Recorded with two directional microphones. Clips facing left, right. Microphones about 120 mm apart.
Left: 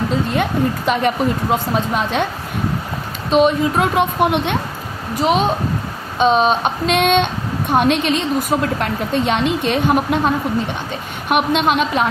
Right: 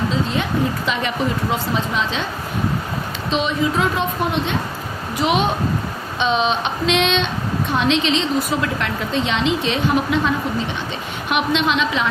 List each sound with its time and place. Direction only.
0.9 s a woman's voice: 50° left (ahead or behind)
3.2 s speech: 50° left (ahead or behind)
5.1 s a woman's voice: 40° left (ahead or behind)